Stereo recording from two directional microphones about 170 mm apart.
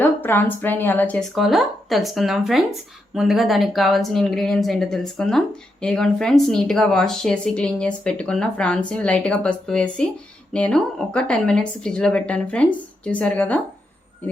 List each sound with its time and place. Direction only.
0.0 s speech: 10° left (ahead or behind)